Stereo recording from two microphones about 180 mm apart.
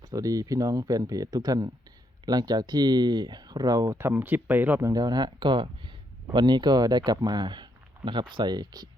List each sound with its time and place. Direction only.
0.0 s speech: 20° right (ahead or behind)